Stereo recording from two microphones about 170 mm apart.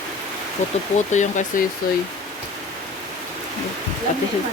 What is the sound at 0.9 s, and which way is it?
Speech, 45° left (ahead or behind).